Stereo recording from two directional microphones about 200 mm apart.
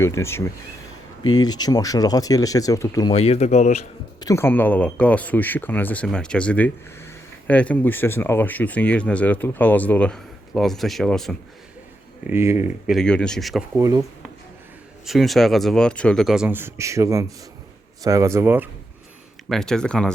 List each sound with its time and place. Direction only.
0.0 s speech: 15° left (ahead or behind)
3.1 s speech: 30° left (ahead or behind)
4.2 s speech: 15° left (ahead or behind)
12.3 s speech: 10° right (ahead or behind)
12.9 s speech: 5° left (ahead or behind)
13.7 s speech: 15° right (ahead or behind)
15.0 s speech: centre (ahead or behind)
19.5 s speech: 5° left (ahead or behind)